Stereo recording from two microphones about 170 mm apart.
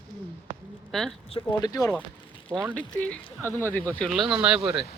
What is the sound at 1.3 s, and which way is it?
Speech, 25° left (ahead or behind).